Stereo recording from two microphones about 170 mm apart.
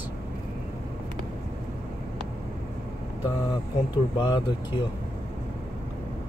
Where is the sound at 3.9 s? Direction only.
25° left (ahead or behind).